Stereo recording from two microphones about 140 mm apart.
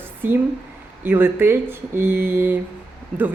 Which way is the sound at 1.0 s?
15° right (ahead or behind).